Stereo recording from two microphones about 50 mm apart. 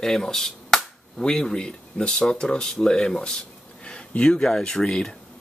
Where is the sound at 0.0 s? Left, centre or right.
Centre.